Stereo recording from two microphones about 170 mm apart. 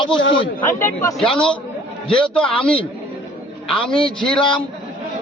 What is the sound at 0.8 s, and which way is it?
Speech, 15° left (ahead or behind).